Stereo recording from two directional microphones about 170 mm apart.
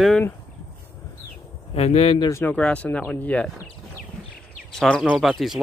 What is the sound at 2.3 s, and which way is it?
Speech, 15° left (ahead or behind).